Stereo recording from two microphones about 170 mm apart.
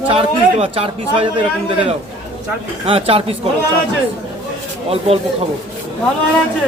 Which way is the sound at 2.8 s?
35° right (ahead or behind).